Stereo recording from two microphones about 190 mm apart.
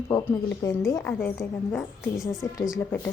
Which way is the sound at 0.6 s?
10° left (ahead or behind).